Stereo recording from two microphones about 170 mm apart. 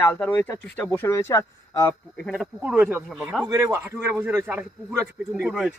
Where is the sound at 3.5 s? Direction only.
15° right (ahead or behind).